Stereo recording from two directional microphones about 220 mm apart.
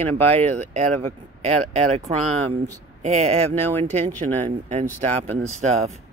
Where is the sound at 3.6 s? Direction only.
10° left (ahead or behind).